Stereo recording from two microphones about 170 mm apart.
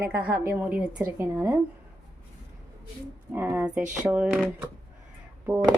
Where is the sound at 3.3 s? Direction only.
10° right (ahead or behind).